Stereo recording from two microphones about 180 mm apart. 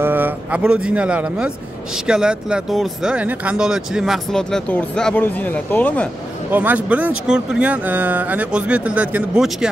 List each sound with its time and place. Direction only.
0.0 s a man's voice: 10° right (ahead or behind); by 6.0 s 10° left (ahead or behind)
6.5 s speech: 10° right (ahead or behind)